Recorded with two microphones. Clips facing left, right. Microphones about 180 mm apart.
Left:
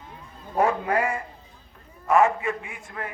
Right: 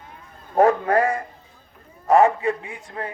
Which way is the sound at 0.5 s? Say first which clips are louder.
Right 6 dB; 45° right (ahead or behind).